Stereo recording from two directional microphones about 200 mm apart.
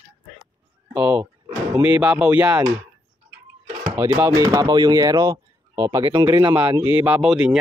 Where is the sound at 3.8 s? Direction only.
10° right (ahead or behind).